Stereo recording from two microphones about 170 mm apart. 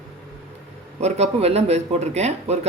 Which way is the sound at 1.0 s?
40° right (ahead or behind).